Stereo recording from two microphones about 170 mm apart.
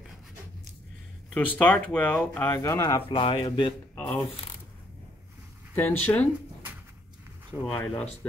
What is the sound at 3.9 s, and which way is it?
Speech, 5° left (ahead or behind).